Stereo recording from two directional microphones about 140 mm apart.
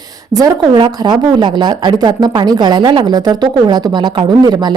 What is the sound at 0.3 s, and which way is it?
A woman's voice, 30° right (ahead or behind).